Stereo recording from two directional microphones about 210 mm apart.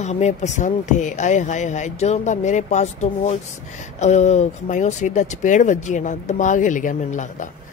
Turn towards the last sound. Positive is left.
turn(degrees=35)  # may be behind; listen again after turning